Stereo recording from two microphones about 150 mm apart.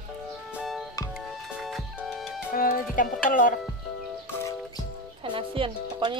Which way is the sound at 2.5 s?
70° left (ahead or behind).